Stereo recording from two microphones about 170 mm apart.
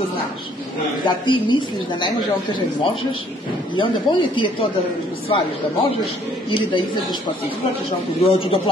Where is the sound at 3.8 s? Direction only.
30° left (ahead or behind).